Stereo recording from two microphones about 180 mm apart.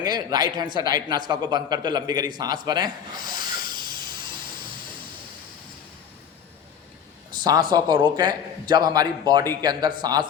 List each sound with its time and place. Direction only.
0.0 s a man's voice: 20° right (ahead or behind)
7.3 s a man's voice: 25° right (ahead or behind)